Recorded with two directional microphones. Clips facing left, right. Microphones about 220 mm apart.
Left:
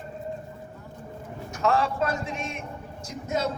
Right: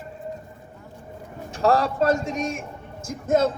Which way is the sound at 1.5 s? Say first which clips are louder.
Right 4 dB; 35° right (ahead or behind).